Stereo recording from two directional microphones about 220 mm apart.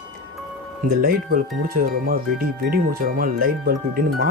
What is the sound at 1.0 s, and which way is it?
Speech, 40° right (ahead or behind).